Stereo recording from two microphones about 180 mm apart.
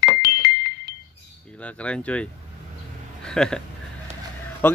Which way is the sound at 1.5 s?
5° left (ahead or behind).